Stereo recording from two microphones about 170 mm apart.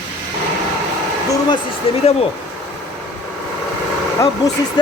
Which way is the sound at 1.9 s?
35° left (ahead or behind).